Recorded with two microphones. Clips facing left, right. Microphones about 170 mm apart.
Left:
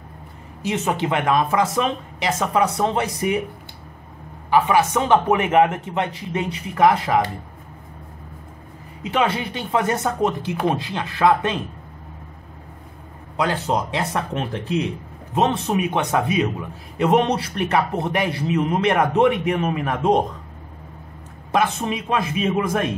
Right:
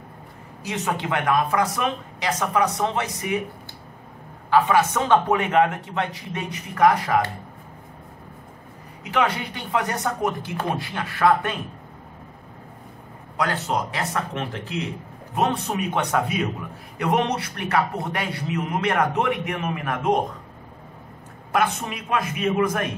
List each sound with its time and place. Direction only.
0.7 s a man's voice: 25° left (ahead or behind)
4.5 s a man's voice: 15° left (ahead or behind)
9.1 s a man's voice: 25° left (ahead or behind)
13.4 s a man's voice: 25° left (ahead or behind)
21.5 s a man's voice: 25° left (ahead or behind)